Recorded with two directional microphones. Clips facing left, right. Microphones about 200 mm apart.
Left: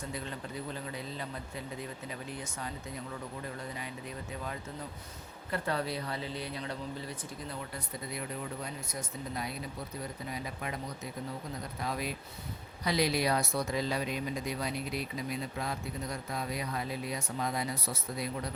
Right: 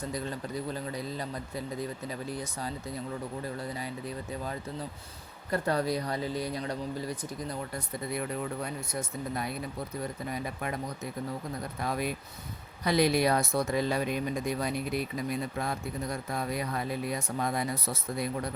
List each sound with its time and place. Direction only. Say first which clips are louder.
0.1 s a man's voice: right 5 dB; 40° right (ahead or behind)
5.5 s a man's voice: right 5 dB; 40° right (ahead or behind)
8.6 s speech: right 5 dB; 50° right (ahead or behind)